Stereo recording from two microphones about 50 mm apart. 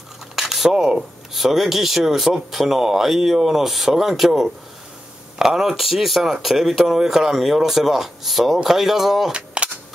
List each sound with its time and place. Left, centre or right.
0.4 s speech: centre
9.3 s cap gun: right